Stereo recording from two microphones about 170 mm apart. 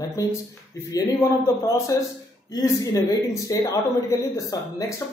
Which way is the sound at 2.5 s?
20° left (ahead or behind).